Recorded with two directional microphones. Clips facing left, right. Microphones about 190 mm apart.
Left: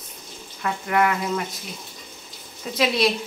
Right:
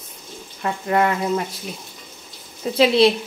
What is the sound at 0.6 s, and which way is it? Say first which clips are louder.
Speech: right 2 dB; 25° right (ahead or behind).